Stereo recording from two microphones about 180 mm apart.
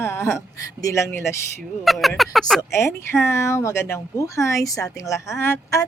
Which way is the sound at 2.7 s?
15° left (ahead or behind).